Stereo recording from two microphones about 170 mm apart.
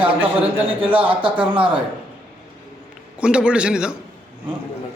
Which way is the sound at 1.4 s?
30° right (ahead or behind).